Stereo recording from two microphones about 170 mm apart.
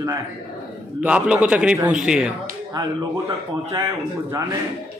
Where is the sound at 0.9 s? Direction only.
5° right (ahead or behind).